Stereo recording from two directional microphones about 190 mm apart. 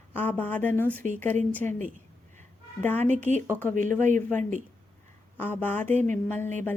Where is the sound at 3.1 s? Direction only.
40° right (ahead or behind).